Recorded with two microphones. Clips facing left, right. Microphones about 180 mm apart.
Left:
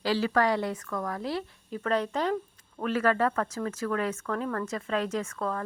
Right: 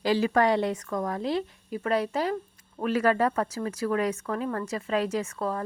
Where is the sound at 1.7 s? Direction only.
10° right (ahead or behind).